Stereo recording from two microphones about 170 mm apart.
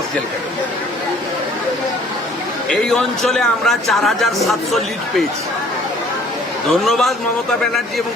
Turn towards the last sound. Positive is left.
turn(degrees=0)  # may be behind; listen again after turning